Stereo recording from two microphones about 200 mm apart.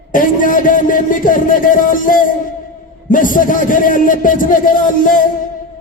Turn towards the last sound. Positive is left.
turn(degrees=40)  # may be behind; listen again after turning